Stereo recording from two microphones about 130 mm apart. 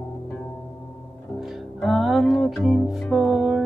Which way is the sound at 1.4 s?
Centre (ahead or behind).